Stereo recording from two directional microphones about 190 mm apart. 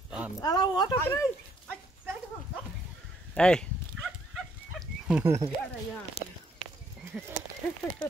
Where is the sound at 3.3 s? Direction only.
5° left (ahead or behind).